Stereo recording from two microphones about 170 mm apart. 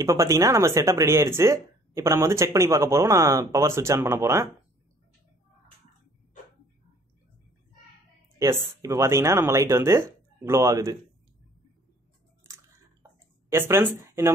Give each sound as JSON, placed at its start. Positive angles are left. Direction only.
{"t": 0.0, "sound": "speech", "side_deg": -20}
{"t": 8.4, "sound": "speech", "side_deg": -20}
{"t": 13.5, "sound": "speech", "side_deg": -15}